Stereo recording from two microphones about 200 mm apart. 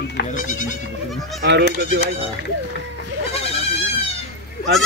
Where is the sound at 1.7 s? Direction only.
65° right (ahead or behind).